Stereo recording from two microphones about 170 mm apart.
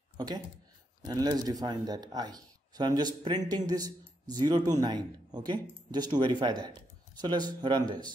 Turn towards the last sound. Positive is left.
turn(degrees=-25)  # may be behind; listen again after turning